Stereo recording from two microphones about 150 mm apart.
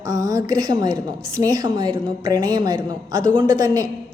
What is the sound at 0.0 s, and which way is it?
A woman's voice, 25° right (ahead or behind).